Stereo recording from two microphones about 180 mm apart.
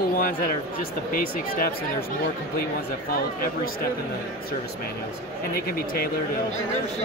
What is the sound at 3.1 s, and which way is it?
Speech, 55° left (ahead or behind).